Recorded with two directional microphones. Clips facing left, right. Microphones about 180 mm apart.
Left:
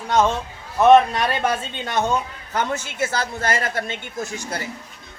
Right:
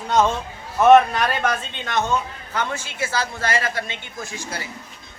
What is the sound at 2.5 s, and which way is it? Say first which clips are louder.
A woman's voice: left 3 dB; 45° left (ahead or behind).